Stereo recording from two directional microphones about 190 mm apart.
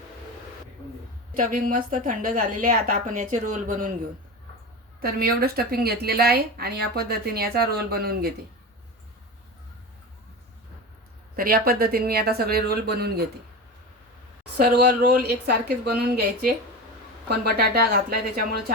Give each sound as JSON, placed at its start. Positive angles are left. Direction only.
{"t": 1.3, "sound": "a woman's voice", "side_deg": -45}
{"t": 5.0, "sound": "a woman's voice", "side_deg": -55}
{"t": 11.3, "sound": "a woman's voice", "side_deg": -50}
{"t": 14.5, "sound": "a woman's voice", "side_deg": -60}